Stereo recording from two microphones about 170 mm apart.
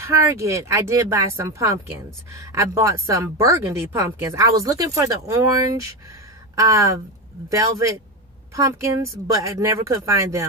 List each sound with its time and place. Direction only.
0.0 s speech: 15° right (ahead or behind)